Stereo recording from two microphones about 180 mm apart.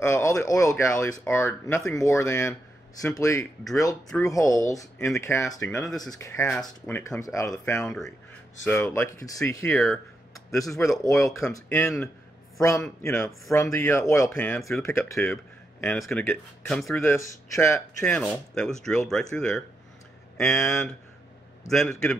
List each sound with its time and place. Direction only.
0.0 s a man's voice: 15° left (ahead or behind)
7.8 s a man's voice: 5° left (ahead or behind)
15.8 s speech: 5° left (ahead or behind)
16.9 s a man's voice: 15° left (ahead or behind)
18.0 s speech: 5° left (ahead or behind)